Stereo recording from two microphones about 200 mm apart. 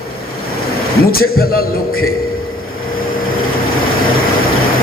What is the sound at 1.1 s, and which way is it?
Speech, 50° left (ahead or behind).